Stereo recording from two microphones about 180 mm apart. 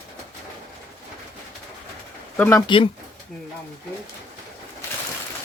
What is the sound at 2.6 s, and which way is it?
Speech, 30° left (ahead or behind).